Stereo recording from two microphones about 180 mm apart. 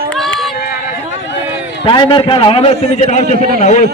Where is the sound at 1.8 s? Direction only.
30° left (ahead or behind).